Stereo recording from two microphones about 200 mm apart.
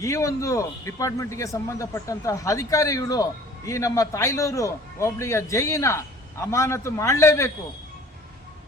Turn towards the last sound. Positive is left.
turn(degrees=15)  # may be behind; listen again after turning